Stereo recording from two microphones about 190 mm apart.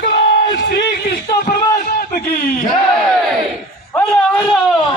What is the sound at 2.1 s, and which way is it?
Speech, 35° left (ahead or behind).